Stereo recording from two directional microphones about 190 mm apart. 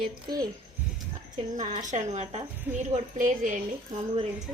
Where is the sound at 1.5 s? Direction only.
40° right (ahead or behind).